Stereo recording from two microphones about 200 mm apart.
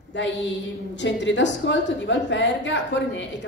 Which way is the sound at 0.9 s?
65° left (ahead or behind).